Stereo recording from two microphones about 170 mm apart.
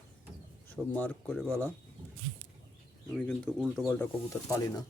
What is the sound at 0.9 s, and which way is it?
Speech, 10° left (ahead or behind).